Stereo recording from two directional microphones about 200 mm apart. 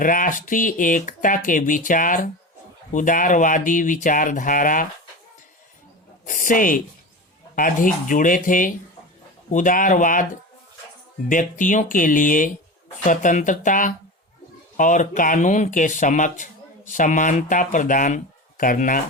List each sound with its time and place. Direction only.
0.0 s speech: 40° left (ahead or behind)
6.2 s speech: 40° left (ahead or behind)
11.3 s speech: 40° left (ahead or behind)